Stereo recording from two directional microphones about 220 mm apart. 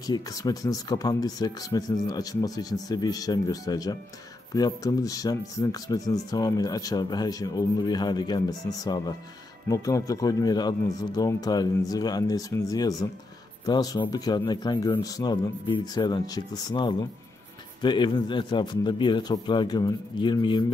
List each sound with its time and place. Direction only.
0.0 s a man's voice: 15° left (ahead or behind)